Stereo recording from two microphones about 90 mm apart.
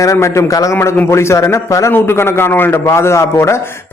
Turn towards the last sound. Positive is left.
turn(degrees=30)  # may be behind; listen again after turning